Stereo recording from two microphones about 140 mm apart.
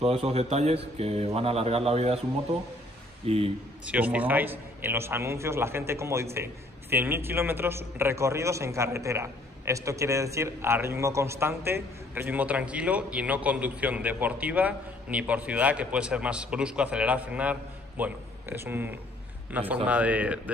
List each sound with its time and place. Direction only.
0.0 s a man's voice: 45° right (ahead or behind)
3.3 s a man's voice: 45° right (ahead or behind)
3.8 s a man's voice: 10° right (ahead or behind)